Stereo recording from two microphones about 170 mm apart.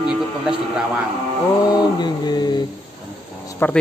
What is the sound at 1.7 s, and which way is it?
Speech, 25° left (ahead or behind).